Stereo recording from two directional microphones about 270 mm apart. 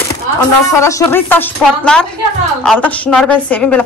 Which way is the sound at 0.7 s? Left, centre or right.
Centre.